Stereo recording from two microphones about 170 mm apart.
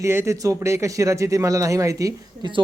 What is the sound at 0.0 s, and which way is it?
Speech, 15° right (ahead or behind).